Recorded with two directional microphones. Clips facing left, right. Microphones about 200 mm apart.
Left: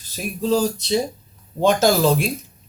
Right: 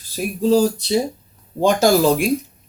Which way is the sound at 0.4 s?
10° right (ahead or behind).